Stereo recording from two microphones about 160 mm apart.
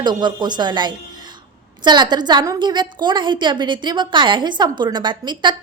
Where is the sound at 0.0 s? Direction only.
25° right (ahead or behind).